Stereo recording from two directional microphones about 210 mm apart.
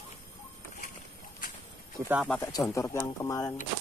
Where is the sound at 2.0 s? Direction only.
10° right (ahead or behind).